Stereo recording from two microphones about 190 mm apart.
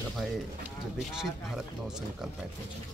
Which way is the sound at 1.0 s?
Centre (ahead or behind).